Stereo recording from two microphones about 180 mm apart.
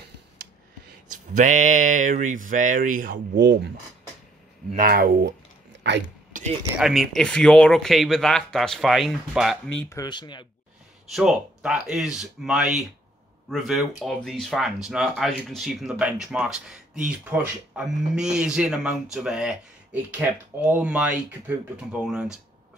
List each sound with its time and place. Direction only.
1.1 s speech: 45° right (ahead or behind); by 3.7 s 70° right (ahead or behind)
4.6 s speech: 50° right (ahead or behind)
5.9 s speech: 80° right
6.3 s a sound: 50° right (ahead or behind)
6.8 s speech: centre (ahead or behind)
9.9 s speech: 25° left (ahead or behind)
11.1 s speech: centre (ahead or behind)